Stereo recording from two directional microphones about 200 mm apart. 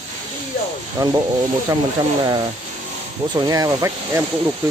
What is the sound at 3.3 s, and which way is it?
Speech, 20° right (ahead or behind).